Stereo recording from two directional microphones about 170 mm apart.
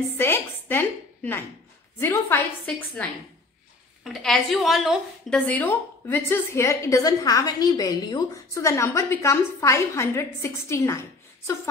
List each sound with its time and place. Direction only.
0.2 s a woman's voice: 15° left (ahead or behind)
5.5 s a woman's voice: 10° left (ahead or behind)